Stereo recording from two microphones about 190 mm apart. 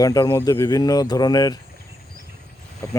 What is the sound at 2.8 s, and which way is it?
Speech, 15° left (ahead or behind).